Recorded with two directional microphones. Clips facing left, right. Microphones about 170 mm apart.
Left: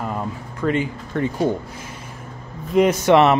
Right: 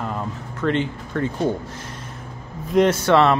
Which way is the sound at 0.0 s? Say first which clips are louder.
Left 1 dB; 10° left (ahead or behind).